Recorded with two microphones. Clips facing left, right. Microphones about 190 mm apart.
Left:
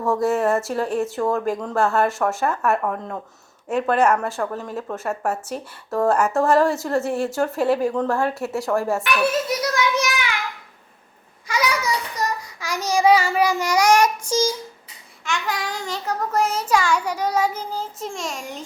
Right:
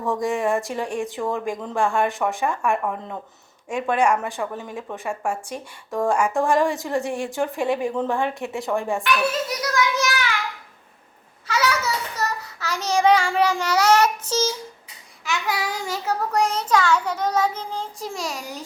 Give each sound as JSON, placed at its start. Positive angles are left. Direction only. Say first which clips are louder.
{"t": 0.0, "sound": "a child's voice", "louder": "left 3 dB", "side_deg": 0}
{"t": 9.7, "sound": "a sound", "louder": "left 1 dB", "side_deg": 20}
{"t": 11.4, "sound": "child singing", "louder": "even", "side_deg": 15}
{"t": 15.2, "sound": "a child's voice", "louder": "even", "side_deg": -5}